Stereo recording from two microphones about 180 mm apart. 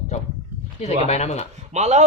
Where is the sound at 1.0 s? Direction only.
35° left (ahead or behind).